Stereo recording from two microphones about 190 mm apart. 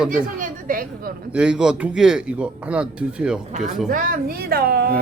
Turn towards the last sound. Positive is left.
turn(degrees=-55)  # may be behind; listen again after turning